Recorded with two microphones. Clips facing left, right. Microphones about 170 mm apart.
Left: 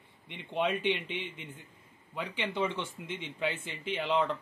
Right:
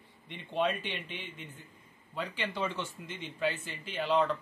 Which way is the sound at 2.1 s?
15° left (ahead or behind).